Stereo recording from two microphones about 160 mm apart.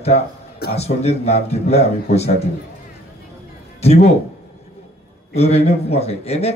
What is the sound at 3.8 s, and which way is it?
Speech, 40° left (ahead or behind).